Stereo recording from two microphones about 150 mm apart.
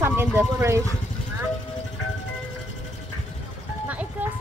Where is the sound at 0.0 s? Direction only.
15° right (ahead or behind).